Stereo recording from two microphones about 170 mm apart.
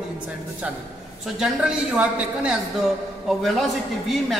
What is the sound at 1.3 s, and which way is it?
A man's voice, 5° right (ahead or behind).